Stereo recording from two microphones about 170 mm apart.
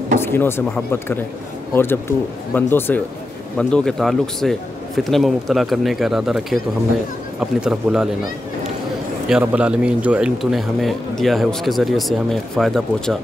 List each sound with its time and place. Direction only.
0.2 s a man's voice: 15° left (ahead or behind); by 8.1 s 5° right (ahead or behind)
9.3 s a man's voice: 10° right (ahead or behind)